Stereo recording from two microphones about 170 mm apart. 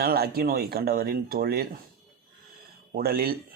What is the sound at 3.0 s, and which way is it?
Speech, 60° right (ahead or behind).